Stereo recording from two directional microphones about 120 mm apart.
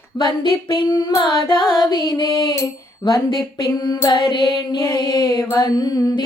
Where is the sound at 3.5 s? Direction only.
35° left (ahead or behind).